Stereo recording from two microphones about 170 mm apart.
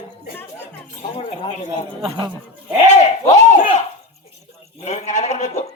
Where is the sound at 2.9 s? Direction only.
40° left (ahead or behind).